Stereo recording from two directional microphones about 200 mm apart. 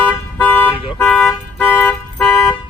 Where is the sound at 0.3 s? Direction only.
10° left (ahead or behind).